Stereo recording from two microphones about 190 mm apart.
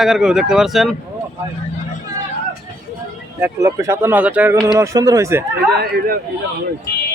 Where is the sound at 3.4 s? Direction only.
15° right (ahead or behind).